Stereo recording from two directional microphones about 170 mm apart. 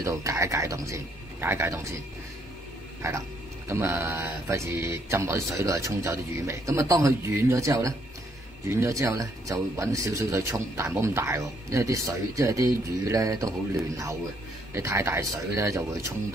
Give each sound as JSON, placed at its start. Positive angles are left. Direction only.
{"t": 0.0, "sound": "speech", "side_deg": -20}
{"t": 3.0, "sound": "a man's voice", "side_deg": -15}